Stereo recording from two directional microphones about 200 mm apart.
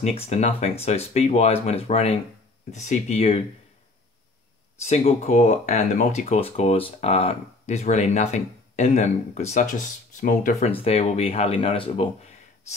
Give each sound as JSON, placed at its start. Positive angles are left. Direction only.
{"t": 0.0, "sound": "speech", "side_deg": 30}
{"t": 4.7, "sound": "speech", "side_deg": 35}
{"t": 10.7, "sound": "speech", "side_deg": 30}